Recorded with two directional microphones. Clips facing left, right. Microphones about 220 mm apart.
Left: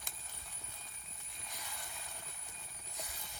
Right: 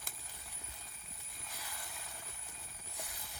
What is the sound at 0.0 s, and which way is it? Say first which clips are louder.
Clip-clop: even; centre (ahead or behind).